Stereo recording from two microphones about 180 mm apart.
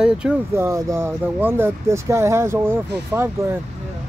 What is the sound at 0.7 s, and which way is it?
Speech, 15° right (ahead or behind).